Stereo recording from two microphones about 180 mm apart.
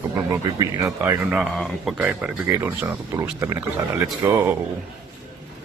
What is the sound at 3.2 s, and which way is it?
Speech, 15° right (ahead or behind).